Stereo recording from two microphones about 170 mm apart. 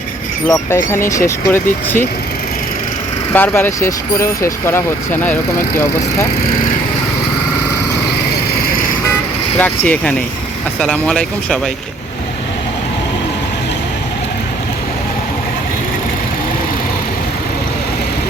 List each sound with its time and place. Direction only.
0.4 s speech: 20° left (ahead or behind)
3.3 s speech: 10° left (ahead or behind)
9.6 s speech: 10° left (ahead or behind)